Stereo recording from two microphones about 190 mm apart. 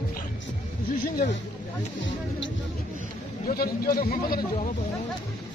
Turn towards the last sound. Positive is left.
turn(degrees=50)  # may be behind; listen again after turning